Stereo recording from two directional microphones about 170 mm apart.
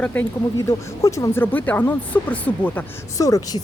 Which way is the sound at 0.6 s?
15° left (ahead or behind).